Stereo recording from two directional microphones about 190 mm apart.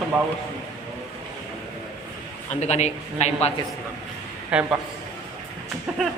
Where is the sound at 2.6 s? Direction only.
35° left (ahead or behind).